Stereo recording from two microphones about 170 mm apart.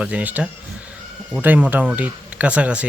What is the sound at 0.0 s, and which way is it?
Speech, 10° right (ahead or behind).